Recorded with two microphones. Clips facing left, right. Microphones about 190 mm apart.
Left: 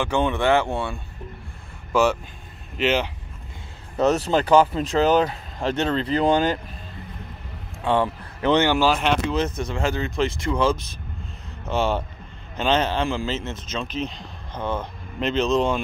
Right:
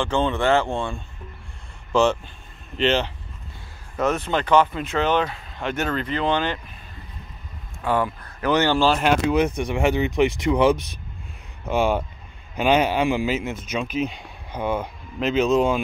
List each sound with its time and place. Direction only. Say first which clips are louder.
0.0 s speech: even; 10° left (ahead or behind)
4.0 s speech: left 3 dB; 35° left (ahead or behind)
7.8 s a man's voice: left 1 dB; 25° left (ahead or behind)
8.5 s speech: right 1 dB; 10° left (ahead or behind)
9.0 s speech: right 3 dB; 10° right (ahead or behind)